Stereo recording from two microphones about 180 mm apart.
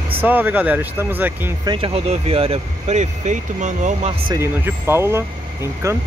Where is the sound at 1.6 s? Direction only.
30° right (ahead or behind).